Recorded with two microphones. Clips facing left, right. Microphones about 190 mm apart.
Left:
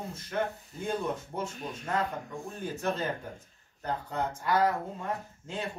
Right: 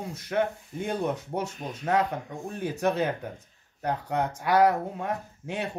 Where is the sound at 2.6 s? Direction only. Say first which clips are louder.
Right 6 dB; 70° right (ahead or behind).